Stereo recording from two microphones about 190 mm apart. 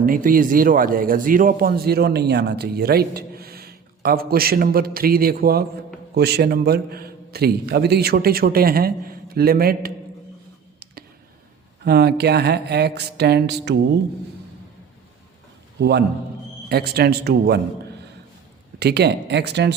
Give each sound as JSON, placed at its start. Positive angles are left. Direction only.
{"t": 0.0, "sound": "speech", "side_deg": -45}
{"t": 11.9, "sound": "speech", "side_deg": -60}
{"t": 15.8, "sound": "speech", "side_deg": -60}
{"t": 18.8, "sound": "speech", "side_deg": -60}